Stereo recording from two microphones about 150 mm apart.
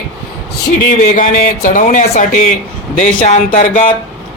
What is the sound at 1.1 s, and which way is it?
A man's voice, 65° left (ahead or behind).